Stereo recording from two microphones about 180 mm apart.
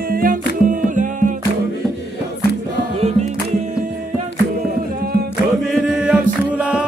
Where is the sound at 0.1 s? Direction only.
50° right (ahead or behind).